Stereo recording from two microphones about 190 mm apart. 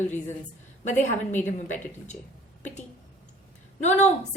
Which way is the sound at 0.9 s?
40° left (ahead or behind).